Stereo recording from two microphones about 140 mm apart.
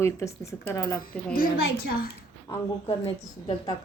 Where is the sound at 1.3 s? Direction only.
90° left.